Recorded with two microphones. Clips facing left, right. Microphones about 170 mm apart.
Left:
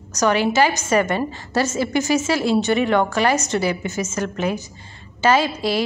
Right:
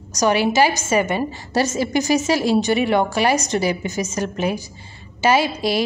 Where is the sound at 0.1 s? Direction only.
10° right (ahead or behind).